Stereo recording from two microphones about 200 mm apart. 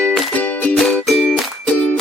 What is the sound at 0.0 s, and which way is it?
Music, 5° left (ahead or behind).